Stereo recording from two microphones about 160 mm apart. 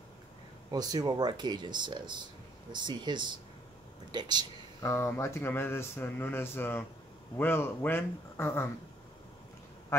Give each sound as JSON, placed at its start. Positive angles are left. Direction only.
{"t": 0.7, "sound": "speech", "side_deg": -25}
{"t": 4.8, "sound": "speech", "side_deg": 15}